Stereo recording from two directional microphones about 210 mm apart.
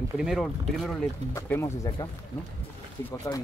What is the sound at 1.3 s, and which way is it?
Speech, 10° left (ahead or behind).